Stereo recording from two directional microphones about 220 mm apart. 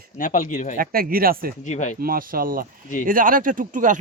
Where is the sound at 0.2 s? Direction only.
35° left (ahead or behind).